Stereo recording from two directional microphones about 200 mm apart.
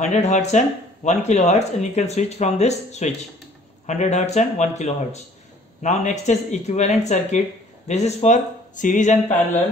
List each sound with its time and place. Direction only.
0.0 s speech: 35° left (ahead or behind)